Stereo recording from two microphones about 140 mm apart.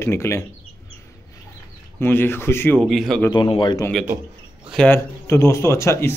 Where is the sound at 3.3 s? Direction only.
35° left (ahead or behind).